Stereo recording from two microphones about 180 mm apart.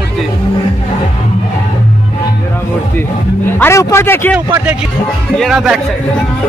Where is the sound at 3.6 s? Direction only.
15° left (ahead or behind).